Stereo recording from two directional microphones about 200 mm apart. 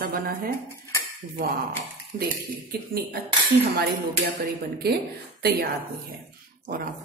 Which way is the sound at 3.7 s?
50° right (ahead or behind).